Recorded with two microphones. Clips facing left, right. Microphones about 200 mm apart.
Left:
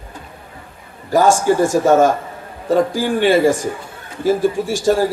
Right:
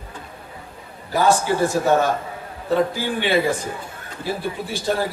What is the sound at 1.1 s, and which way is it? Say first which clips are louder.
A man's voice: left 5 dB; 45° left (ahead or behind).